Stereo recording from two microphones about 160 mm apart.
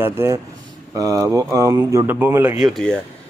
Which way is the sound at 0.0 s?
15° right (ahead or behind).